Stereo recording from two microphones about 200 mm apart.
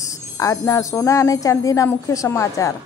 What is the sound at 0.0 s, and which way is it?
Speech, 15° left (ahead or behind).